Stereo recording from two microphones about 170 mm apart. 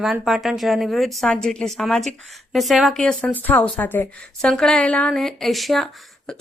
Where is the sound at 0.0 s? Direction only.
5° right (ahead or behind).